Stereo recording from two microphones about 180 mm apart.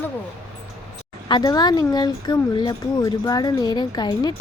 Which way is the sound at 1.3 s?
25° left (ahead or behind).